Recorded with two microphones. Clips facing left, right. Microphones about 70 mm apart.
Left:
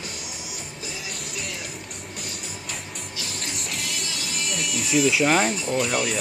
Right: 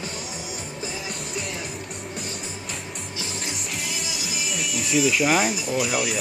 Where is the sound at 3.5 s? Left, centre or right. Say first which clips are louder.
Even; centre.